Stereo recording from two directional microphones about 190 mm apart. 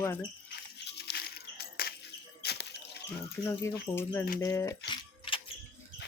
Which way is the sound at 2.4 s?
60° left (ahead or behind).